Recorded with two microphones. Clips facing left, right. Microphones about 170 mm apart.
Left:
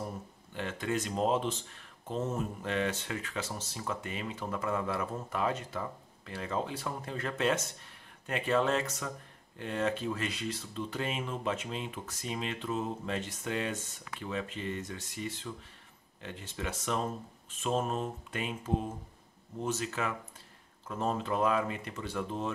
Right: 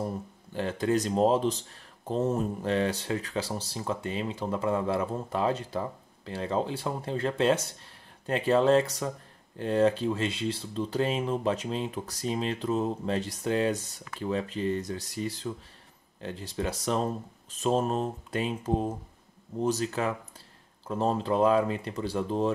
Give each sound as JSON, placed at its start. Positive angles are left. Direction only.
{"t": 0.6, "sound": "speech", "side_deg": -35}